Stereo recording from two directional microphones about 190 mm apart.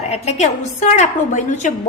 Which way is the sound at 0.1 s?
35° left (ahead or behind).